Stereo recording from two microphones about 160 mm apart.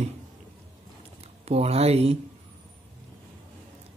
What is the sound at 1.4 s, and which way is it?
Speech, 40° right (ahead or behind).